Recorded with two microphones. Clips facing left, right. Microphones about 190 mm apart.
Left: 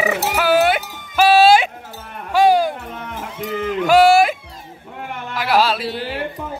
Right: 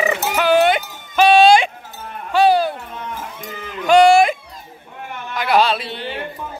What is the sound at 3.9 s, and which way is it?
Music, 5° left (ahead or behind).